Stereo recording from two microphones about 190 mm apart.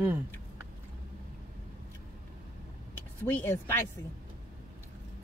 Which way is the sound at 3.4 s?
10° left (ahead or behind).